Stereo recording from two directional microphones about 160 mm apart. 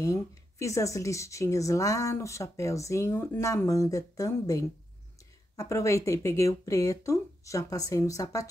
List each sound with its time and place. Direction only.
0.0 s a woman's voice: 20° left (ahead or behind)